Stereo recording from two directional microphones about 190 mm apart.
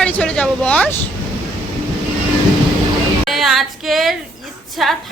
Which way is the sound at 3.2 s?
Centre (ahead or behind).